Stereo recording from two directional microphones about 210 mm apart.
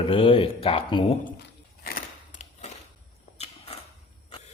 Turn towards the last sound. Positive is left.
turn(degrees=30)  # may be behind; listen again after turning